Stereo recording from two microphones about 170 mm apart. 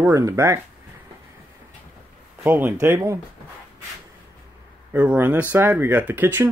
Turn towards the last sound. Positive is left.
turn(degrees=-10)  # may be behind; listen again after turning